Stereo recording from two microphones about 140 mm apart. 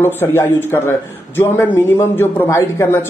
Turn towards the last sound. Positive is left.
turn(degrees=15)  # may be behind; listen again after turning